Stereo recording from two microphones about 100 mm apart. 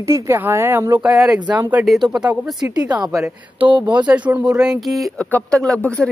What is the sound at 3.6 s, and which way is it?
Speech, 50° right (ahead or behind).